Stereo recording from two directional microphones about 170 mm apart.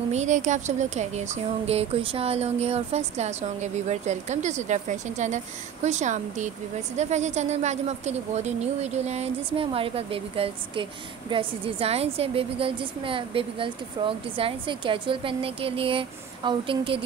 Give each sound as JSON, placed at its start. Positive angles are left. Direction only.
{"t": 0.1, "sound": "speech", "side_deg": -45}